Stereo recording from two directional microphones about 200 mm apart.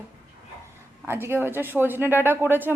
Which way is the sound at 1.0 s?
10° right (ahead or behind).